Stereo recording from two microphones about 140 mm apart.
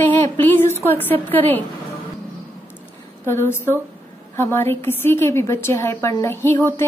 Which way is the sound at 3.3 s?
15° left (ahead or behind).